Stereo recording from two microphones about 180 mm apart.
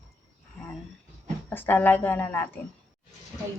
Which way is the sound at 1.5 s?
10° left (ahead or behind).